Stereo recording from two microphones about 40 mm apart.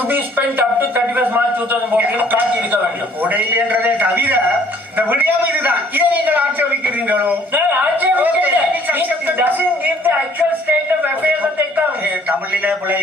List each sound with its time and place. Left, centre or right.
0.1 s a man's voice: right